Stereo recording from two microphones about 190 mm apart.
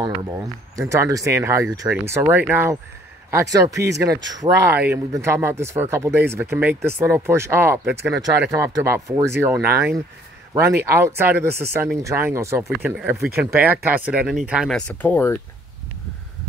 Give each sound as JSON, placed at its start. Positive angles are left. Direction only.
{"t": 0.0, "sound": "speech", "side_deg": -20}
{"t": 4.7, "sound": "speech", "side_deg": -10}